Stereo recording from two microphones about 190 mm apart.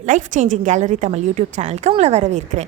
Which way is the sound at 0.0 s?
40° right (ahead or behind).